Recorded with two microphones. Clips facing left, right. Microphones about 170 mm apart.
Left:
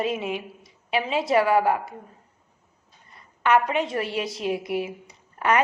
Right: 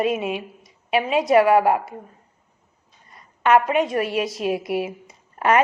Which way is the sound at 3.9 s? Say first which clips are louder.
Right 5 dB; 25° left (ahead or behind).